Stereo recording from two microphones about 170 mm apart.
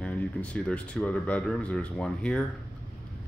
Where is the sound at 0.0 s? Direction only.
10° left (ahead or behind).